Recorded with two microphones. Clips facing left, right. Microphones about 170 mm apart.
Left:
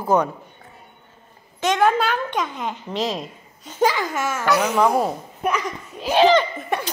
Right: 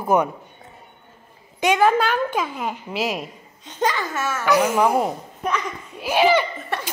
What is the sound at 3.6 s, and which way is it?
Speech, 10° left (ahead or behind).